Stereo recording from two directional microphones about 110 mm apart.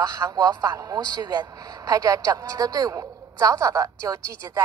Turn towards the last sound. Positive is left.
turn(degrees=-30)  # may be behind; listen again after turning